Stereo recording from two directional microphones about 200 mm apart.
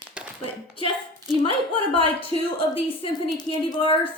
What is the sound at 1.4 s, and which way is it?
A woman's voice, 25° left (ahead or behind).